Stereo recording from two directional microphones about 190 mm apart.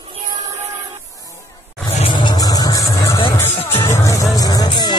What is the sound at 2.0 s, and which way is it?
Vehicle, 25° left (ahead or behind).